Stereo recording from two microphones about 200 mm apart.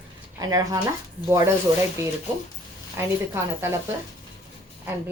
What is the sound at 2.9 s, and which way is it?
Speech, 10° right (ahead or behind).